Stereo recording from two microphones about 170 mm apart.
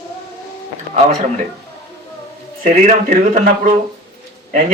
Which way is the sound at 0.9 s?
40° right (ahead or behind).